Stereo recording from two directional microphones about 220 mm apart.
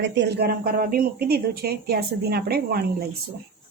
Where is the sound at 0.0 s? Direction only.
50° right (ahead or behind).